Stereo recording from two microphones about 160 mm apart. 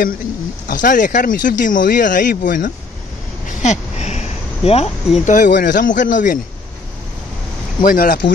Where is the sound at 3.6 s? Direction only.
45° left (ahead or behind).